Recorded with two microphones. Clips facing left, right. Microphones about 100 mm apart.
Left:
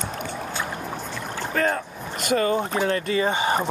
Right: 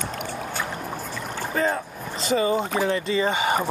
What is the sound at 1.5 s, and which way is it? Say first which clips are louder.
Speech: left 1 dB; 10° right (ahead or behind).